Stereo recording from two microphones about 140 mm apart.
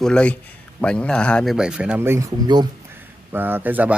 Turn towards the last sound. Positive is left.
turn(degrees=-10)  # may be behind; listen again after turning